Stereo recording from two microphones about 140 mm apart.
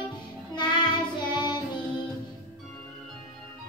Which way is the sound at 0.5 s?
30° left (ahead or behind).